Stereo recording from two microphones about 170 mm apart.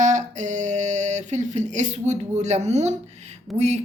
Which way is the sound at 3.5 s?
40° right (ahead or behind).